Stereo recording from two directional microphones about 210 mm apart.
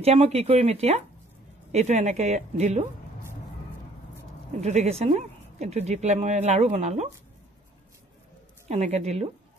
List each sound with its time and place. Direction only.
0.0 s speech: 30° right (ahead or behind)
4.6 s speech: 30° right (ahead or behind)
8.6 s speech: 35° right (ahead or behind)